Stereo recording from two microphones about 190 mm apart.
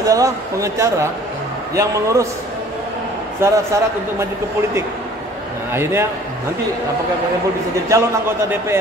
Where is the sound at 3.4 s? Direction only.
15° right (ahead or behind).